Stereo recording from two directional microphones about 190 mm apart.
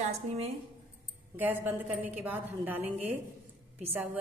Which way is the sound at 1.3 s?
10° right (ahead or behind).